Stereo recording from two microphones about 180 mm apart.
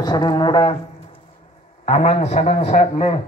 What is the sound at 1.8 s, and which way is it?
A man's voice, 40° left (ahead or behind).